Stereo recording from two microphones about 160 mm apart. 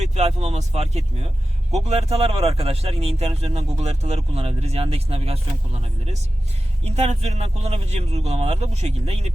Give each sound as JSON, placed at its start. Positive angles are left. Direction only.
{"t": 0.0, "sound": "speech", "side_deg": -45}